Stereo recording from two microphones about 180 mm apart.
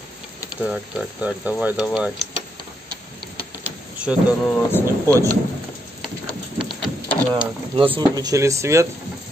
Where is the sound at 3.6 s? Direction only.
5° right (ahead or behind).